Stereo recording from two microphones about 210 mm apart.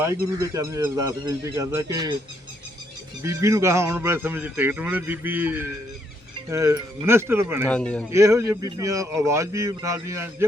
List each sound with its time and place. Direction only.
0.5 s a man's voice: 15° right (ahead or behind)
3.2 s a man's voice: 15° right (ahead or behind)
7.7 s speech: 5° left (ahead or behind)
8.1 s a man's voice: 15° right (ahead or behind)